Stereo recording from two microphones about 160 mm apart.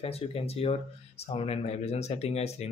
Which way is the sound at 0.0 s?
40° left (ahead or behind).